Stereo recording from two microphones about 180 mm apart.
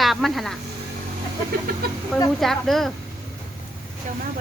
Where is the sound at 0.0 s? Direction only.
Centre (ahead or behind).